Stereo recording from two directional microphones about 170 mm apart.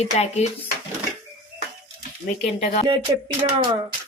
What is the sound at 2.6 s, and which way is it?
Speech, 40° left (ahead or behind).